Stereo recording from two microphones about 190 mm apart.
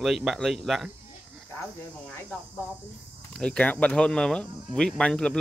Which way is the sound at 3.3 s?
5° left (ahead or behind).